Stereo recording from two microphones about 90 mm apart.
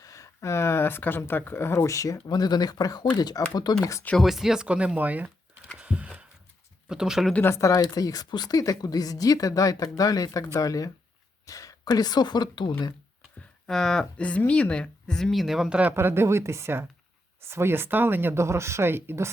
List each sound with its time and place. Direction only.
0.0 s speech: 40° left (ahead or behind)
4.2 s speech: 5° right (ahead or behind)
5.7 s a sound: 15° right (ahead or behind)
6.8 s speech: 5° right (ahead or behind)
7.5 s speech: 40° left (ahead or behind); by 12.7 s 55° left (ahead or behind)
13.7 s speech: 5° left (ahead or behind)
15.8 s speech: 25° right (ahead or behind)